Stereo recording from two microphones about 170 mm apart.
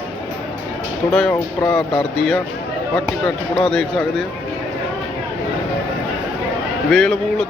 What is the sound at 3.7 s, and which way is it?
Speech, centre (ahead or behind).